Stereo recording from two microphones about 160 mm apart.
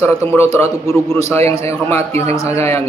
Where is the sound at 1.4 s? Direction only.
40° right (ahead or behind).